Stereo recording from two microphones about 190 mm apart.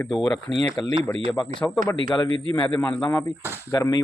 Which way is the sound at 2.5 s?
10° left (ahead or behind).